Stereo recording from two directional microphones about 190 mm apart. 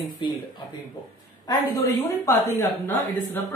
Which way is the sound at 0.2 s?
25° left (ahead or behind).